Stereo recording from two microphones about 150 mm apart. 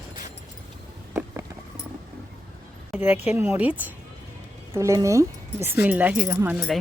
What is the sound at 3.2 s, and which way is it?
Speech, 10° right (ahead or behind).